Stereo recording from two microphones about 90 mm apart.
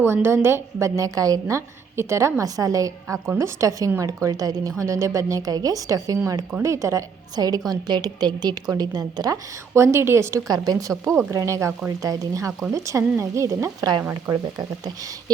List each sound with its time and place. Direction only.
0.0 s a woman's voice: 30° right (ahead or behind); by 9.4 s 45° right (ahead or behind)
9.7 s a woman's voice: 30° right (ahead or behind)
10.5 s a woman's voice: 45° right (ahead or behind)